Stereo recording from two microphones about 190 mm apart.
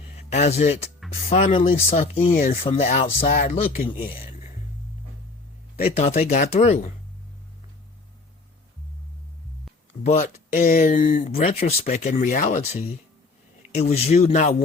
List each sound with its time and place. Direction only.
0.2 s speech: 35° left (ahead or behind)
2.3 s speech: 45° left (ahead or behind)
2.6 s speech: 35° left (ahead or behind)
3.8 s speech: 30° left (ahead or behind)
5.8 s speech: 30° left (ahead or behind)
10.0 s speech: 35° left (ahead or behind)
11.3 s speech: 35° left (ahead or behind)